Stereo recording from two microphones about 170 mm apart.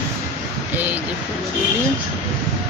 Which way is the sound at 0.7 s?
10° right (ahead or behind).